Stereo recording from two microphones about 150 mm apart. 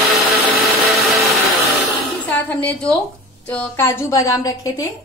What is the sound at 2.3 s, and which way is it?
A woman's voice, 10° left (ahead or behind).